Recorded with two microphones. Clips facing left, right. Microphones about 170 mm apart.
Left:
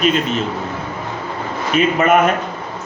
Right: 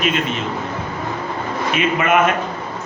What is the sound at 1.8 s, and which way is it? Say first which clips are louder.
Speech: left 5 dB; 35° left (ahead or behind).